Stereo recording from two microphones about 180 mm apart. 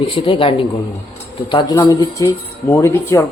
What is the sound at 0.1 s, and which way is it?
Speech, 30° left (ahead or behind).